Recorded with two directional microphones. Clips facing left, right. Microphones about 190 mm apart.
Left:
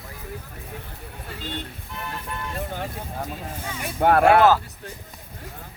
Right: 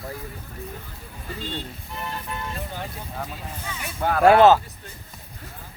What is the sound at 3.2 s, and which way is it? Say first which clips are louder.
Speech: left 3 dB; 50° left (ahead or behind).